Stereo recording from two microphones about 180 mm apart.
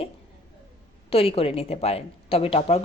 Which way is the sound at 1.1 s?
35° left (ahead or behind).